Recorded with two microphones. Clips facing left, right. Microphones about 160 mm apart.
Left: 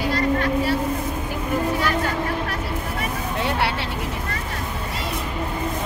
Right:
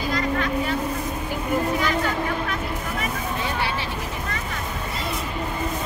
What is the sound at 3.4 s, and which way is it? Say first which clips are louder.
Vehicle: left 6 dB; 70° left (ahead or behind).